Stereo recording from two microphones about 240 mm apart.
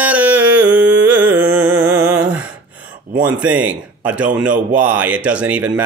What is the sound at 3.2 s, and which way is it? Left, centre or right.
Speech, centre.